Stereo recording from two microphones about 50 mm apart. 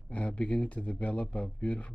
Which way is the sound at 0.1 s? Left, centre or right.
Left.